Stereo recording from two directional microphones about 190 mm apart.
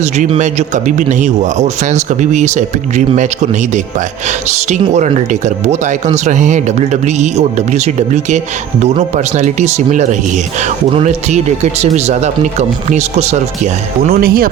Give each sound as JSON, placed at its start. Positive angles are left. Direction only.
{"t": 0.0, "sound": "speech", "side_deg": -40}
{"t": 14.1, "sound": "speech", "side_deg": -50}